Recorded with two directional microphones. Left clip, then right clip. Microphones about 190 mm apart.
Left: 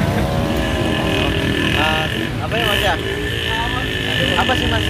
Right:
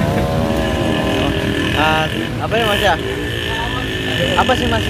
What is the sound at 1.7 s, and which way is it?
Speech, 50° right (ahead or behind).